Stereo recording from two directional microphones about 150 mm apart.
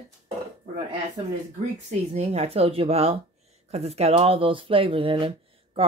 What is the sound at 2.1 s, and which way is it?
Speech, 45° right (ahead or behind).